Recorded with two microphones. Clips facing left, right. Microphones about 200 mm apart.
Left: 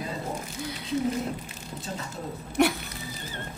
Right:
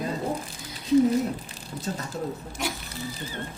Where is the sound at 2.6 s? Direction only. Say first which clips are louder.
Left 10 dB; 60° left (ahead or behind).